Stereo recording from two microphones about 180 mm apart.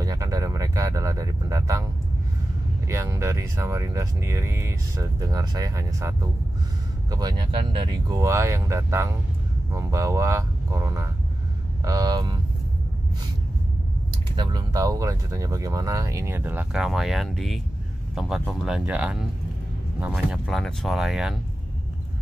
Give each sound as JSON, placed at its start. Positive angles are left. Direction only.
{"t": 0.0, "sound": "a sound", "side_deg": -20}
{"t": 2.9, "sound": "speech", "side_deg": -15}
{"t": 14.3, "sound": "speech", "side_deg": -25}
{"t": 20.4, "sound": "speech", "side_deg": 0}